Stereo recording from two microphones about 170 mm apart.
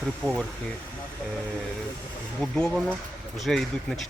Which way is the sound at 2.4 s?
5° left (ahead or behind).